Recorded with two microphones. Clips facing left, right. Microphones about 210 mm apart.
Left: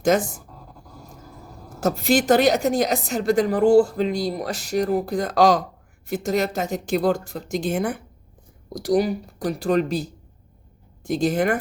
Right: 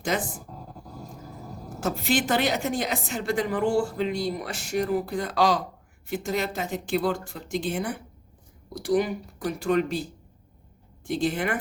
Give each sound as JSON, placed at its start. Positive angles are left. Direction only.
{"t": 0.1, "sound": "speech", "side_deg": 45}
{"t": 1.8, "sound": "a woman's voice", "side_deg": 40}